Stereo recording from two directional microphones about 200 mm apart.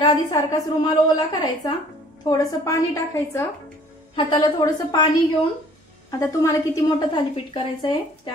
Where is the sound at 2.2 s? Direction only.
20° left (ahead or behind).